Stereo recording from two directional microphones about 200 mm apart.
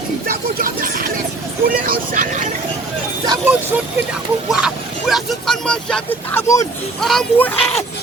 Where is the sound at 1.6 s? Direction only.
45° right (ahead or behind).